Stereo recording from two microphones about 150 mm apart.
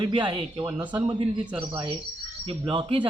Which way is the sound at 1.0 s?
35° right (ahead or behind).